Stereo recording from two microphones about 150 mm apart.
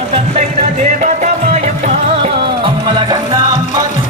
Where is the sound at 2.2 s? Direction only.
35° right (ahead or behind).